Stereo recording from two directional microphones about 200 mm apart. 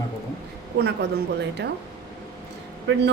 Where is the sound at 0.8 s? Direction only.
55° right (ahead or behind).